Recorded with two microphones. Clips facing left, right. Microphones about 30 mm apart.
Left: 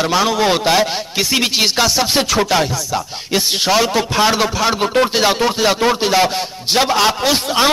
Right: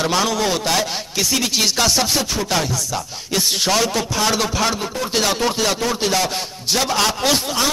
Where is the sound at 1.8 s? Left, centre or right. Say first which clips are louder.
Left 1 dB; centre.